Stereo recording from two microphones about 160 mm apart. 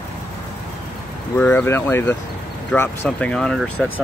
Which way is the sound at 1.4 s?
10° left (ahead or behind).